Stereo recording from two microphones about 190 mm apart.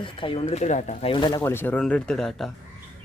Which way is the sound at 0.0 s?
25° left (ahead or behind).